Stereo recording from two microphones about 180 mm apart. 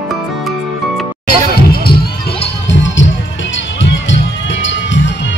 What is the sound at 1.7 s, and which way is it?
Music, 60° left (ahead or behind).